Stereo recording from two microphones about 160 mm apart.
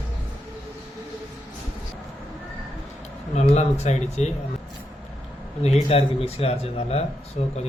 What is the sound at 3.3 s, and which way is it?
Speech, 40° left (ahead or behind).